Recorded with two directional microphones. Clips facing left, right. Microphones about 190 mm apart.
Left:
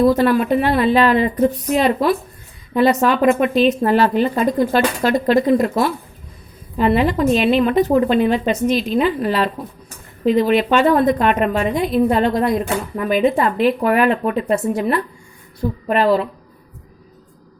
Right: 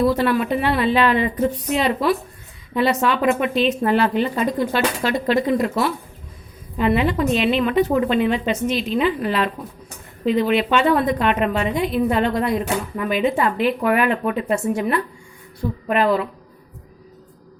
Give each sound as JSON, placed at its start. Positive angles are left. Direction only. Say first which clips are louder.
{"t": 0.0, "sound": "a woman's voice", "louder": "left 4 dB", "side_deg": 40}